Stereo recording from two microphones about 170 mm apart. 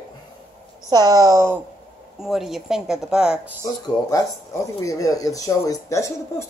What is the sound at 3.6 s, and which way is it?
A woman's voice, 20° left (ahead or behind).